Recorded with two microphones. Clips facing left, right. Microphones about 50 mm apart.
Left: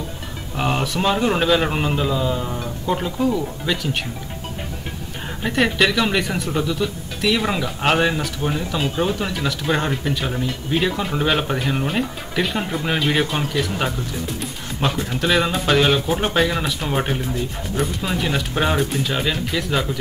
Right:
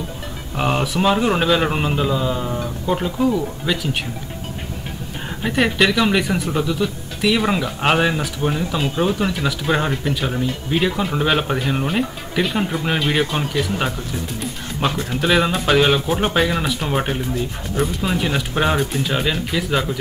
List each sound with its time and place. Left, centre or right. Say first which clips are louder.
0.6 s speech: right 2 dB; centre
5.4 s speech: right 1 dB; centre